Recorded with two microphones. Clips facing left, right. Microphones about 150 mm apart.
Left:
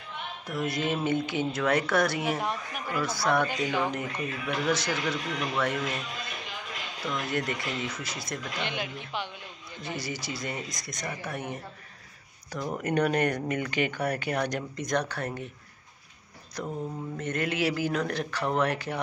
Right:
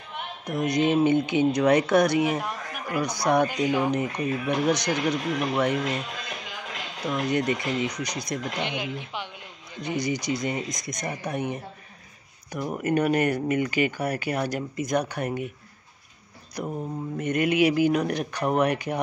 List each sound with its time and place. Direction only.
0.5 s speech: 20° right (ahead or behind)
7.1 s speech: 20° right (ahead or behind)
16.6 s speech: 15° right (ahead or behind)